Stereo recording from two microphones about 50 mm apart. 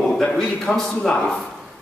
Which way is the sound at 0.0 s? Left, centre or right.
Centre.